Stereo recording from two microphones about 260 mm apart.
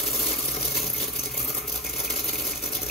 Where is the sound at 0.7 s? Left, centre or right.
Centre.